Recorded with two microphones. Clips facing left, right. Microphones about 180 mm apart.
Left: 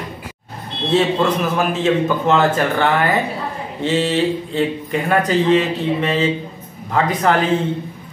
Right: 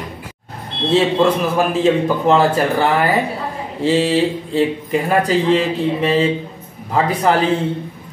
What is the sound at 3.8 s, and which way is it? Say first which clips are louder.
Speech: right 3 dB; 30° right (ahead or behind).